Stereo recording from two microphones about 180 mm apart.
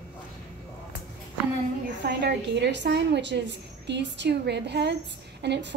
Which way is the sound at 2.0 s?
65° right (ahead or behind).